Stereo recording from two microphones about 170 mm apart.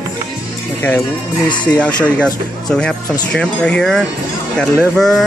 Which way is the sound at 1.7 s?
5° left (ahead or behind).